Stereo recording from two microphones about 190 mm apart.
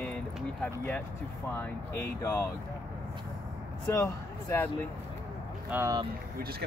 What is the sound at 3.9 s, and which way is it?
Speech, 15° left (ahead or behind).